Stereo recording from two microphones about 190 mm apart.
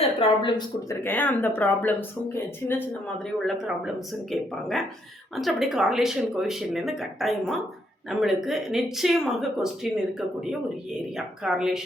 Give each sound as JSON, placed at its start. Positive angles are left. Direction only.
{"t": 0.2, "sound": "speech", "side_deg": 25}
{"t": 1.0, "sound": "speech", "side_deg": 10}
{"t": 3.3, "sound": "speech", "side_deg": 0}
{"t": 11.4, "sound": "speech", "side_deg": -5}